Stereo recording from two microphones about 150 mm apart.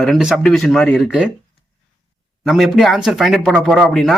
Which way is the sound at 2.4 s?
Centre (ahead or behind).